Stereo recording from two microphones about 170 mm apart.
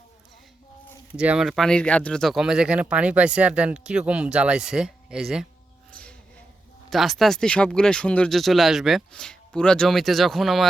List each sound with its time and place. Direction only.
1.1 s speech: 5° right (ahead or behind)
6.9 s speech: centre (ahead or behind)